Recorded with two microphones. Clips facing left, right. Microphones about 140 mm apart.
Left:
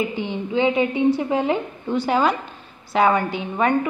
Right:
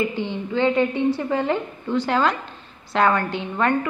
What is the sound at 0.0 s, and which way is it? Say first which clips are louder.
A woman's voice: even; 15° left (ahead or behind).